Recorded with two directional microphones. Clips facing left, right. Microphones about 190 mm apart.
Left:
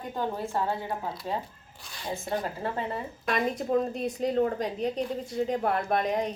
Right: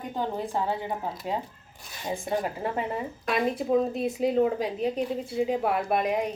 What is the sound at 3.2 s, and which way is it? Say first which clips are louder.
A woman's voice: right 1 dB; 5° right (ahead or behind).